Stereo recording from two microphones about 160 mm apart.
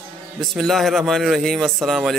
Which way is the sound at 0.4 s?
Centre (ahead or behind).